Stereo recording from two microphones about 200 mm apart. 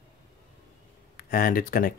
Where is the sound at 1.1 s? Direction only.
45° left (ahead or behind).